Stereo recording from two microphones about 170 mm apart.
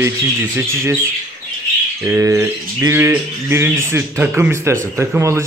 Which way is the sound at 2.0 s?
15° right (ahead or behind).